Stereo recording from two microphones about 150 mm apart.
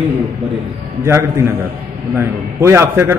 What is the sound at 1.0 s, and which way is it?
A man's voice, 15° right (ahead or behind).